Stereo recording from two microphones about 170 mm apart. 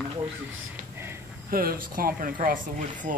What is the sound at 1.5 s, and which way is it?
Speech, 60° right (ahead or behind).